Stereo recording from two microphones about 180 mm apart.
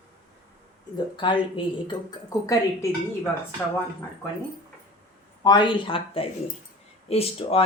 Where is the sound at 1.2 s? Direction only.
25° left (ahead or behind).